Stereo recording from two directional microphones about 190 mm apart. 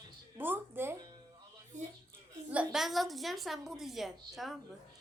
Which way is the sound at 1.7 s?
40° right (ahead or behind).